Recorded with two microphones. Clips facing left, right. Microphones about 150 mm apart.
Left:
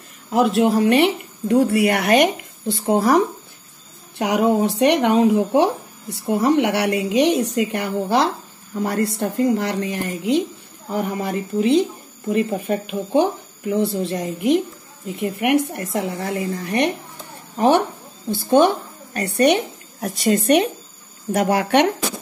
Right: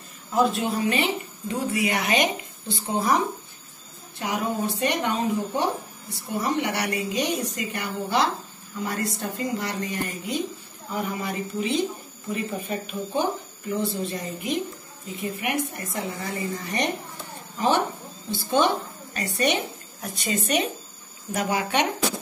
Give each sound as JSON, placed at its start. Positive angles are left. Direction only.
{"t": 0.3, "sound": "speech", "side_deg": 75}
{"t": 4.2, "sound": "a woman's voice", "side_deg": 70}
{"t": 10.9, "sound": "a woman's voice", "side_deg": 55}